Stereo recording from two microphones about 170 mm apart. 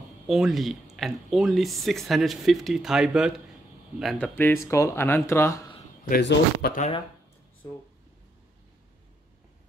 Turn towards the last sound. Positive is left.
turn(degrees=20)  # may be behind; listen again after turning